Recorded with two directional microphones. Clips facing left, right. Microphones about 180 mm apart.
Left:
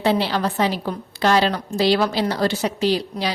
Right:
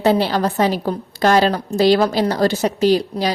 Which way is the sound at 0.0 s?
45° right (ahead or behind).